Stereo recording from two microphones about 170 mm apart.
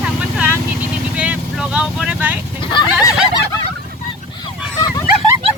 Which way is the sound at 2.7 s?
20° left (ahead or behind).